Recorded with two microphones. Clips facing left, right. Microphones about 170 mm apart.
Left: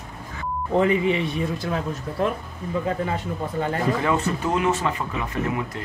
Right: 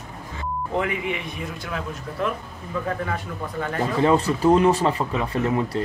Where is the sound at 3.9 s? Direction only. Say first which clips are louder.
Right 4 dB; 35° right (ahead or behind).